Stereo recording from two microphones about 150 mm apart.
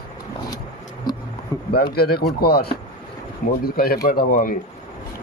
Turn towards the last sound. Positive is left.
turn(degrees=65)  # may be behind; listen again after turning